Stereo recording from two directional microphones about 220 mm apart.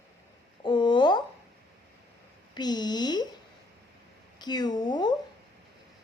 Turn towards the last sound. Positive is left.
turn(degrees=20)  # may be behind; listen again after turning